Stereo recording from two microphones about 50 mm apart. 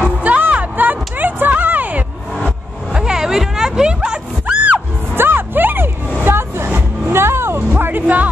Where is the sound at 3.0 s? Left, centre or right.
Centre.